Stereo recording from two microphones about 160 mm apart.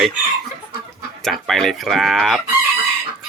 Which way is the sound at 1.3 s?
Centre (ahead or behind).